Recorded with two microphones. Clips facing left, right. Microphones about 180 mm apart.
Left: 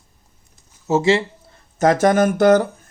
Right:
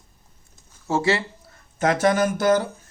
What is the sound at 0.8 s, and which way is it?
Speech, 20° left (ahead or behind).